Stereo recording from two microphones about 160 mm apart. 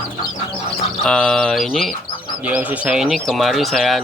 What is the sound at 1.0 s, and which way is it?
Speech, 5° left (ahead or behind).